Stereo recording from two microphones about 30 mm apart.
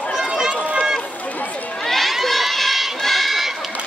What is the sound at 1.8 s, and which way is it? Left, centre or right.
Crowd, centre.